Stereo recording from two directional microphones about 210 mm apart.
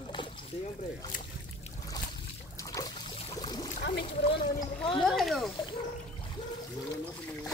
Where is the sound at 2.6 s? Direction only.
15° left (ahead or behind).